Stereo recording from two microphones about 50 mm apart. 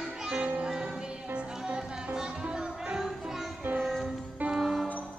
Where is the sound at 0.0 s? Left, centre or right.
Centre.